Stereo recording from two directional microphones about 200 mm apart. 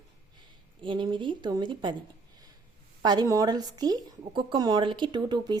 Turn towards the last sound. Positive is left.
turn(degrees=-20)  # may be behind; listen again after turning